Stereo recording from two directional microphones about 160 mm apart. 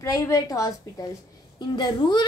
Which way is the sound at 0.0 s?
20° left (ahead or behind).